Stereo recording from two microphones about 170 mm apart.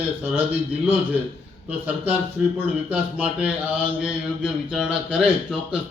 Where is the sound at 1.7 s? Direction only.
10° right (ahead or behind).